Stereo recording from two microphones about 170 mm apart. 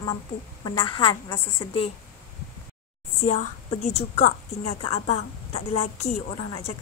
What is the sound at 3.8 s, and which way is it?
A woman's voice, 40° left (ahead or behind).